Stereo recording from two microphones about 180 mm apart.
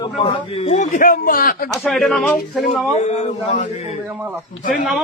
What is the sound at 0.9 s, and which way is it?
Speech, 50° left (ahead or behind).